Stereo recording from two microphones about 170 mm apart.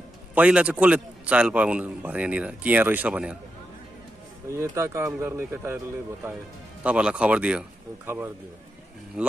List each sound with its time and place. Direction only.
0.3 s a man's voice: 10° right (ahead or behind)
4.5 s a man's voice: 15° right (ahead or behind)
6.8 s a man's voice: 5° right (ahead or behind)